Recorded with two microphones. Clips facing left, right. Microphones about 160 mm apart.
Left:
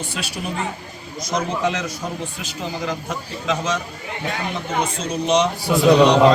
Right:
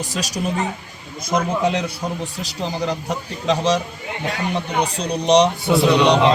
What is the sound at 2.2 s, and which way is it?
A man's voice, 35° right (ahead or behind).